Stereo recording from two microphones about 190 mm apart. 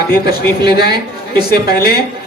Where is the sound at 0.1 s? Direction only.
55° left (ahead or behind).